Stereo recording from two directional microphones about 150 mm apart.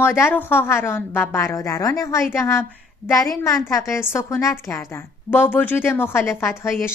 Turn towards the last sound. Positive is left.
turn(degrees=15)  # may be behind; listen again after turning